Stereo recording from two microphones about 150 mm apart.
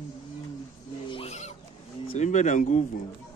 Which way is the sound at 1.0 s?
40° left (ahead or behind).